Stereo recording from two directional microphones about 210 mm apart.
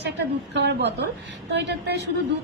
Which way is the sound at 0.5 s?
55° right (ahead or behind).